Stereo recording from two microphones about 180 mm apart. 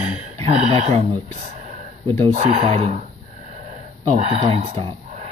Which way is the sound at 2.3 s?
40° right (ahead or behind).